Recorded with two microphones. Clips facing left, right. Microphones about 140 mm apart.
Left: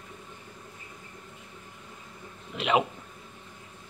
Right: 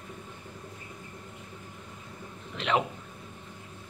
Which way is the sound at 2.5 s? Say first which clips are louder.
Left 3 dB; 10° left (ahead or behind).